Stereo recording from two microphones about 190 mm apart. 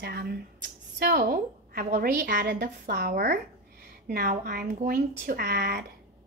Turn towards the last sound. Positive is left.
turn(degrees=-60)  # may be behind; listen again after turning